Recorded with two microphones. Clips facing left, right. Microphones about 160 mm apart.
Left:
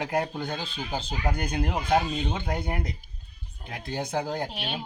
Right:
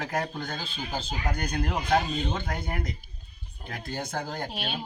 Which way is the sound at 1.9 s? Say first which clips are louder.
Left 1 dB; 10° left (ahead or behind).